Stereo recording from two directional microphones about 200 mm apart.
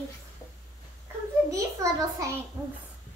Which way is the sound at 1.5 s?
15° right (ahead or behind).